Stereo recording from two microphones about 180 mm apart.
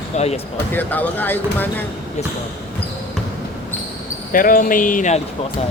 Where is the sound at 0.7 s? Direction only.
10° left (ahead or behind).